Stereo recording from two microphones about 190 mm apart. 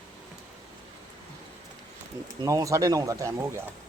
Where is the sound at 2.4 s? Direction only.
15° right (ahead or behind).